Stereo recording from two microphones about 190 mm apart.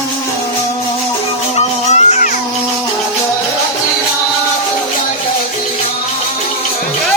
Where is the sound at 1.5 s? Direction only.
35° left (ahead or behind).